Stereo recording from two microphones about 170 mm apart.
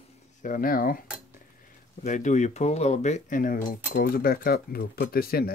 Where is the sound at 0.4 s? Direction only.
55° left (ahead or behind).